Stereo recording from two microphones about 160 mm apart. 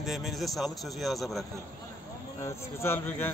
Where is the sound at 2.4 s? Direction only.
15° left (ahead or behind).